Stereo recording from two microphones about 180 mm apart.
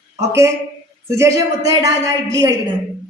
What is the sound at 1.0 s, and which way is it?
A woman's voice, 15° right (ahead or behind).